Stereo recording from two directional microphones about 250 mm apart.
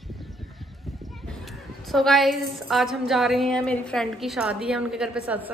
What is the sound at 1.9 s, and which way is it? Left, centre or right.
A woman's voice, centre.